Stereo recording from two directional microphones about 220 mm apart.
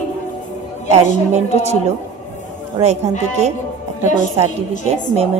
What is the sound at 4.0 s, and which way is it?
Speech, 35° left (ahead or behind).